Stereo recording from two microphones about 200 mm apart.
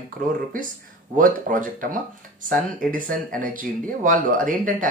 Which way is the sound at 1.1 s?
40° right (ahead or behind).